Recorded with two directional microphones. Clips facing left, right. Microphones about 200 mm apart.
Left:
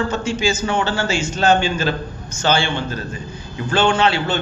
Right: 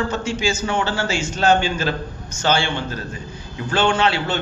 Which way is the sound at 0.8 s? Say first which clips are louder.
Left 2 dB; 20° left (ahead or behind).